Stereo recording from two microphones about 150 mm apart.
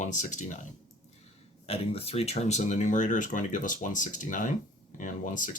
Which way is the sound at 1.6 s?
40° left (ahead or behind).